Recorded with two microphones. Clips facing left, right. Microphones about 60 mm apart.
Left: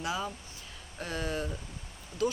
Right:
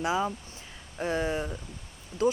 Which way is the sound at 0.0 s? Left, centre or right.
Right.